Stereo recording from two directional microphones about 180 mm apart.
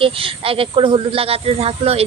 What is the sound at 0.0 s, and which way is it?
A woman's voice, 30° right (ahead or behind).